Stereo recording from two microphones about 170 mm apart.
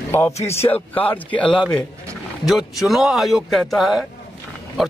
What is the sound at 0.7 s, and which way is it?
A man's voice, 10° left (ahead or behind).